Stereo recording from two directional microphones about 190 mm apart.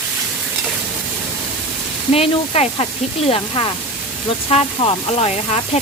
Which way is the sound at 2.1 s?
30° left (ahead or behind).